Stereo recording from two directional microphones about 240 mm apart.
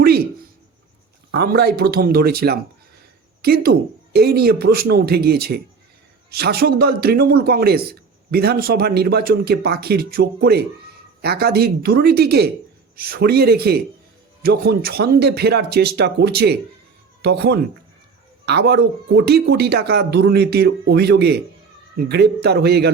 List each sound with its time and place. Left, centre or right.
1.3 s a man's voice: right